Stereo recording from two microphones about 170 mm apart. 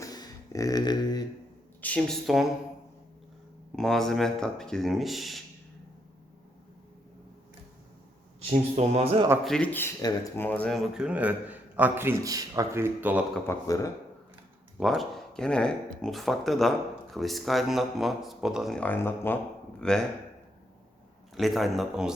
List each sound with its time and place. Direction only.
0.0 s a sound: 20° left (ahead or behind)
1.8 s speech: 5° left (ahead or behind)
3.8 s speech: centre (ahead or behind)
8.4 s a man's voice: 40° right (ahead or behind)
9.4 s speech: 5° left (ahead or behind)
10.9 s a man's voice: 5° right (ahead or behind)
13.5 s speech: 20° left (ahead or behind)
14.8 s speech: centre (ahead or behind)
21.3 s speech: centre (ahead or behind)